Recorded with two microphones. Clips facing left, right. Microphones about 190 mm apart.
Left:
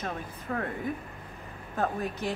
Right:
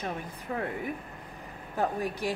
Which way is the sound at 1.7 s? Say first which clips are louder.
Right 1 dB; 15° right (ahead or behind).